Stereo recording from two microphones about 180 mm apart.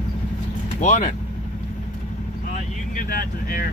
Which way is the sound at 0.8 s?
40° left (ahead or behind).